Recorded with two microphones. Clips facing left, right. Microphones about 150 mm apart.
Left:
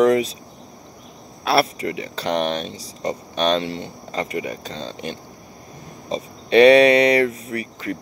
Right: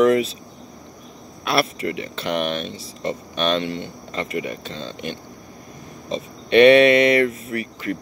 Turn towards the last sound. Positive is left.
turn(degrees=30)  # may be behind; listen again after turning